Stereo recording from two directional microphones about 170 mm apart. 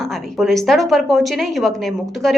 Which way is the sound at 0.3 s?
Centre (ahead or behind).